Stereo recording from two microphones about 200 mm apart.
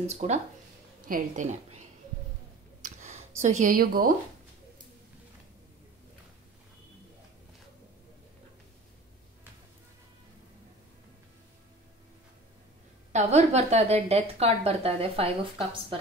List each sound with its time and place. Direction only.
0.0 s a woman's voice: 35° right (ahead or behind)
2.8 s a sound: 35° right (ahead or behind)
13.1 s a woman's voice: 35° right (ahead or behind)